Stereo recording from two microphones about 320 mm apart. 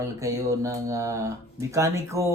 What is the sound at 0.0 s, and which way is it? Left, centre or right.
Speech, centre.